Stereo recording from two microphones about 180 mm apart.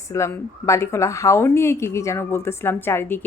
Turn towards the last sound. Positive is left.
turn(degrees=10)  # may be behind; listen again after turning